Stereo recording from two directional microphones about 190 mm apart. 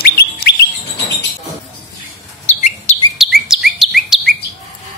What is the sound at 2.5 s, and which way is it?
Chirp, 35° left (ahead or behind).